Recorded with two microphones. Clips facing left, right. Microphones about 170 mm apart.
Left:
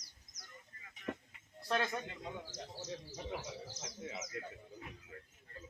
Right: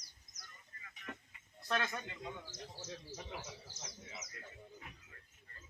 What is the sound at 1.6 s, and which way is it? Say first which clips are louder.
Speech: left 2 dB; 30° left (ahead or behind).